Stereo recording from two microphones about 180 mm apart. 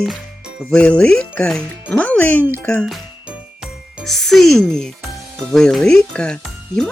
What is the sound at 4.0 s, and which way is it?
Speech, centre (ahead or behind).